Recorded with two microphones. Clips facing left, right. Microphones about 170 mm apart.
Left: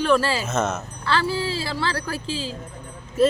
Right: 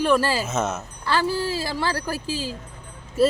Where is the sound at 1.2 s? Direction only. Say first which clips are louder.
Right 1 dB; 45° right (ahead or behind).